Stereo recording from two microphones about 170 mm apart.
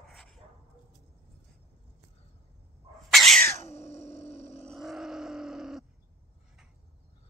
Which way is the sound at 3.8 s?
15° left (ahead or behind).